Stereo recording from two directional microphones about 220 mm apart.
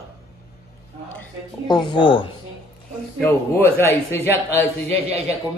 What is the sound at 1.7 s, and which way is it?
Speech, 20° left (ahead or behind).